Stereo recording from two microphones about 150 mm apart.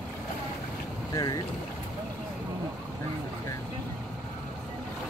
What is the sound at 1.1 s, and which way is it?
Speech, 25° left (ahead or behind).